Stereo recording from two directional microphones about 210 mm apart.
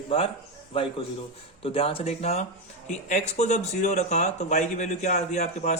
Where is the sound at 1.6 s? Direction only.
25° left (ahead or behind).